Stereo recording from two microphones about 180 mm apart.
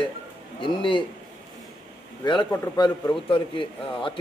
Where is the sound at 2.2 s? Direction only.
25° left (ahead or behind).